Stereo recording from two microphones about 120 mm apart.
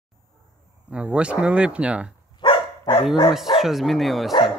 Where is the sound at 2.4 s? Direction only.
45° left (ahead or behind).